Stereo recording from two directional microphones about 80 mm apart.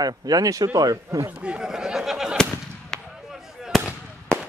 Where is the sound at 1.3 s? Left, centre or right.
Centre.